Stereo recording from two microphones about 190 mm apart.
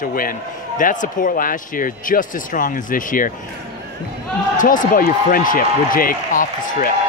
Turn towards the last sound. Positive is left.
turn(degrees=45)  # may be behind; listen again after turning